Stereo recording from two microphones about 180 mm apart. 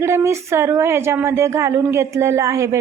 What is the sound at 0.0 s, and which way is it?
Speech, 15° right (ahead or behind).